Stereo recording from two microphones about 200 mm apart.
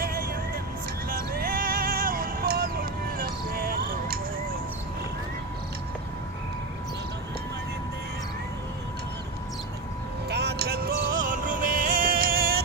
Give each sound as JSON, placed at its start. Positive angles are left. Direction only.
{"t": 0.0, "sound": "vehicle", "side_deg": -50}
{"t": 1.1, "sound": "music", "side_deg": -45}
{"t": 10.2, "sound": "music", "side_deg": -55}